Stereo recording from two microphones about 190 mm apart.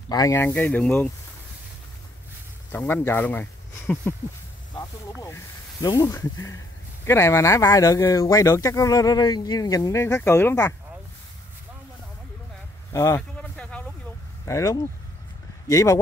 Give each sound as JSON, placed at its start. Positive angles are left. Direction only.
{"t": 0.1, "sound": "speech", "side_deg": 15}
{"t": 2.7, "sound": "speech", "side_deg": 10}
{"t": 5.2, "sound": "speech", "side_deg": 20}
{"t": 12.9, "sound": "speech", "side_deg": 15}
{"t": 13.4, "sound": "a sound", "side_deg": 5}
{"t": 14.4, "sound": "speech", "side_deg": 20}